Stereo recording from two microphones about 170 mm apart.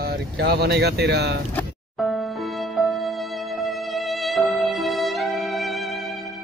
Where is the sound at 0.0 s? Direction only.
75° right (ahead or behind).